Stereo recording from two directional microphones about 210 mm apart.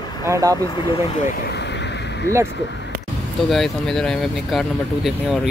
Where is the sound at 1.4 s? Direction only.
55° left (ahead or behind).